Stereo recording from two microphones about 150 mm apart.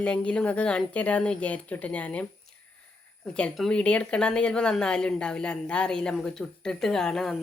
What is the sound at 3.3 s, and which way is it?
Speech, 5° left (ahead or behind).